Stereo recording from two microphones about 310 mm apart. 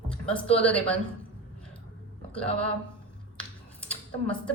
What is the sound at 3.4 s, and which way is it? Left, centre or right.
Finger snapping, centre.